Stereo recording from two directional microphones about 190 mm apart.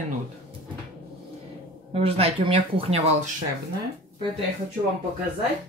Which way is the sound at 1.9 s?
30° right (ahead or behind).